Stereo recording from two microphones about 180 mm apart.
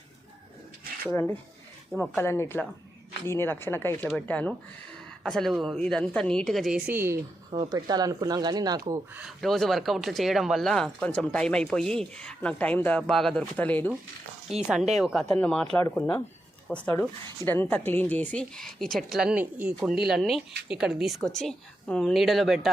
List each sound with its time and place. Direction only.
1.1 s a woman's voice: 10° left (ahead or behind); by 7.2 s 15° right (ahead or behind)
7.5 s speech: 25° right (ahead or behind)
8.9 s a woman's voice: 10° right (ahead or behind); by 13.9 s 10° left (ahead or behind)
14.9 s a woman's voice: centre (ahead or behind)